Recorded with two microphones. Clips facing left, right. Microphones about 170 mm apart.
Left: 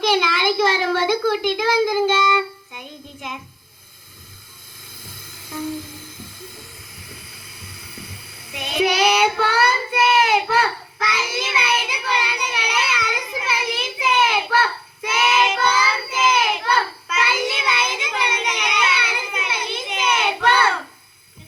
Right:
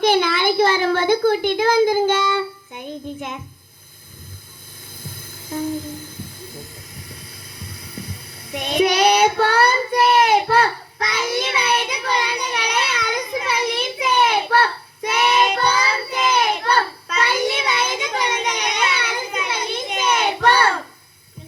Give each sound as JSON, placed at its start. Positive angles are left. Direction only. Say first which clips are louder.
{"t": 0.0, "sound": "a sound", "louder": "right 2 dB", "side_deg": -45}
{"t": 2.7, "sound": "music", "louder": "right 8 dB", "side_deg": -45}
{"t": 5.0, "sound": "music", "louder": "right 6 dB", "side_deg": -45}
{"t": 7.6, "sound": "child singing", "louder": "right 5 dB", "side_deg": -40}